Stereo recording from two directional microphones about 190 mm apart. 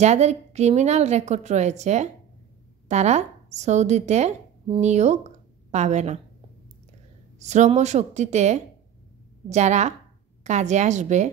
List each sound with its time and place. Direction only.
0.0 s a woman's voice: 35° right (ahead or behind)
7.3 s a woman's voice: 35° right (ahead or behind)